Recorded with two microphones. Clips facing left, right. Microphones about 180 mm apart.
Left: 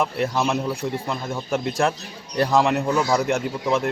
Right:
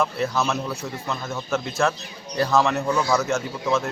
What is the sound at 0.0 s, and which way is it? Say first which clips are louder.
A man's voice: left 1 dB; 15° left (ahead or behind).